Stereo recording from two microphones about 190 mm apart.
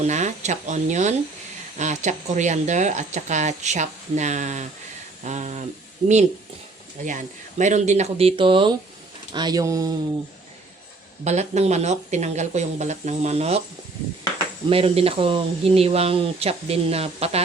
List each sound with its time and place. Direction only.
0.0 s speech: 40° right (ahead or behind)
7.0 s speech: 40° right (ahead or behind); by 9.9 s 20° right (ahead or behind)
11.2 s speech: 35° right (ahead or behind)
14.7 s speech: 30° right (ahead or behind)